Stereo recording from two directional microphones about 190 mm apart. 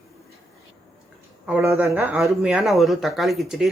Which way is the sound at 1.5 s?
10° right (ahead or behind).